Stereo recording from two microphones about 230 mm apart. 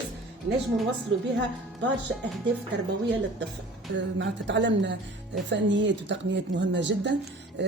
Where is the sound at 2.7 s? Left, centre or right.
Right.